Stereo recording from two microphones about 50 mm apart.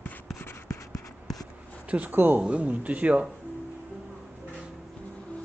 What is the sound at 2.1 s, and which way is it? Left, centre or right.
Speech, right.